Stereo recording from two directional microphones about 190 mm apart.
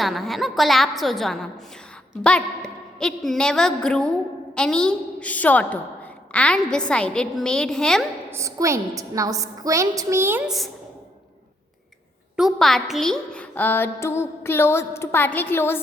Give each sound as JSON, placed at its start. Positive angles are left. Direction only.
{"t": 0.0, "sound": "a woman's voice", "side_deg": 0}
{"t": 8.3, "sound": "a woman's voice", "side_deg": -15}
{"t": 12.4, "sound": "a woman's voice", "side_deg": 0}